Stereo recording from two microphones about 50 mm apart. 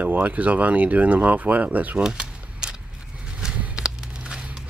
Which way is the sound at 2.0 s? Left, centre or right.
Centre.